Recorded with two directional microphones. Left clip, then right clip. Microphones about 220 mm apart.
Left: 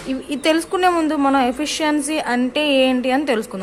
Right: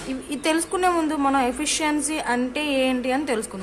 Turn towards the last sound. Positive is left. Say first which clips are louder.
# left 5 dB
turn(degrees=20)  # may be behind; listen again after turning